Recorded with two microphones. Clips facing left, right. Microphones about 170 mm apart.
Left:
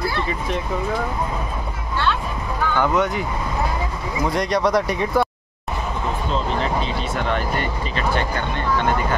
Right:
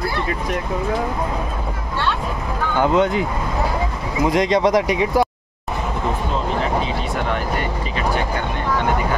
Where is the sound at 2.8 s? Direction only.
25° right (ahead or behind).